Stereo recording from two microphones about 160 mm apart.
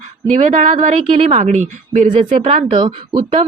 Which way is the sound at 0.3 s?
50° right (ahead or behind).